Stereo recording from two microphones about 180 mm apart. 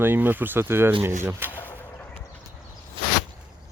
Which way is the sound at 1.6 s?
10° left (ahead or behind).